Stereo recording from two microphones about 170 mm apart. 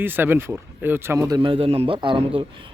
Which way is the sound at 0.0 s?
10° right (ahead or behind).